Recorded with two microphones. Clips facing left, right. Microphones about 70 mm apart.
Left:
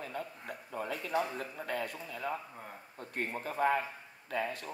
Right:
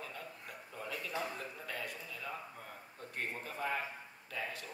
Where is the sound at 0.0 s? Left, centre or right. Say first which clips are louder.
Left 6 dB; left.